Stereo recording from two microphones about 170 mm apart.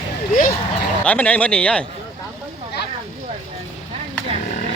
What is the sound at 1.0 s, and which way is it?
Speech, 10° left (ahead or behind).